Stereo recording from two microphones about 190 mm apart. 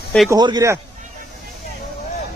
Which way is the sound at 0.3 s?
20° right (ahead or behind).